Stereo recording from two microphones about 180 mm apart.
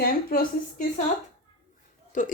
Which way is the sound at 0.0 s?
55° left (ahead or behind).